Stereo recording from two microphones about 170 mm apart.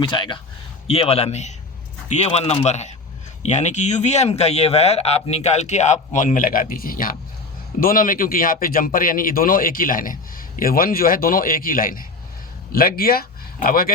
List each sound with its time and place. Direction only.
0.0 s a man's voice: 30° left (ahead or behind); by 13.9 s 60° left (ahead or behind)